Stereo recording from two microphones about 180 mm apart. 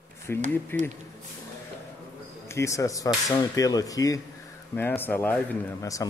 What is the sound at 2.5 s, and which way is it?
Speech, 15° left (ahead or behind).